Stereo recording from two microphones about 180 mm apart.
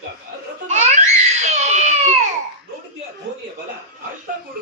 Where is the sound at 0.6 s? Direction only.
40° right (ahead or behind).